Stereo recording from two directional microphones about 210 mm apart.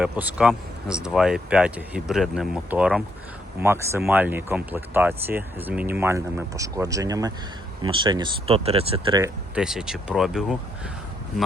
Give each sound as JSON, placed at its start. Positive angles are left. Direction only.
{"t": 0.0, "sound": "speech", "side_deg": -5}
{"t": 9.6, "sound": "speech", "side_deg": -5}